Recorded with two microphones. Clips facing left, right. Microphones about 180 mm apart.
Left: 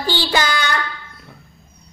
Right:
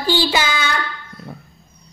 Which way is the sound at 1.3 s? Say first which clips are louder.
Right 8 dB; 50° right (ahead or behind).